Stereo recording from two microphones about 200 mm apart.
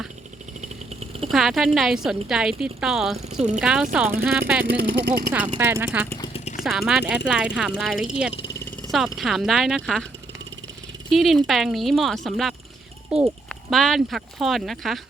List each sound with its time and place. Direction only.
1.3 s speech: centre (ahead or behind)
4.8 s speech: 50° right (ahead or behind)
5.3 s speech: 10° right (ahead or behind)
11.1 s speech: centre (ahead or behind)